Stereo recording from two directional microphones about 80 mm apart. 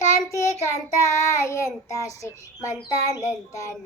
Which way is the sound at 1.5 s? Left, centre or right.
Left.